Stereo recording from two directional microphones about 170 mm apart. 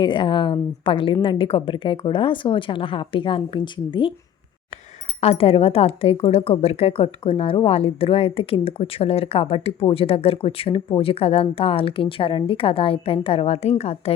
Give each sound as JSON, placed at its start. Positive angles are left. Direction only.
{"t": 0.0, "sound": "a woman's voice", "side_deg": 30}
{"t": 5.2, "sound": "speech", "side_deg": 35}